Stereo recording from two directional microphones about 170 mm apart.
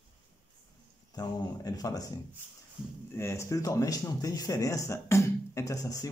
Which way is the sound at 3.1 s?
15° left (ahead or behind).